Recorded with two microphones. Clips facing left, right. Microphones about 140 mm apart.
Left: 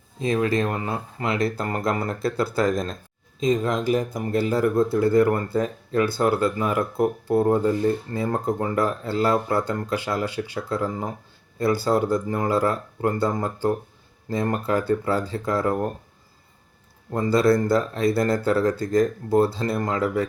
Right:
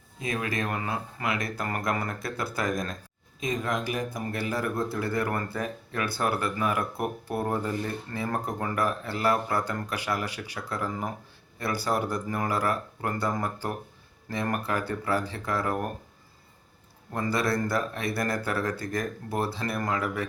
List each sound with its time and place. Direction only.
0.2 s speech: 30° left (ahead or behind)
17.1 s speech: 25° left (ahead or behind)